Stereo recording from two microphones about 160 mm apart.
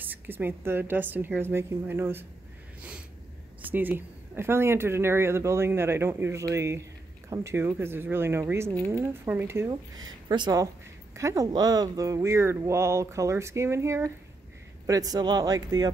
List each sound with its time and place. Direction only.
0.0 s speech: 10° right (ahead or behind)
3.6 s speech: 10° right (ahead or behind)
9.7 s speech: 25° right (ahead or behind)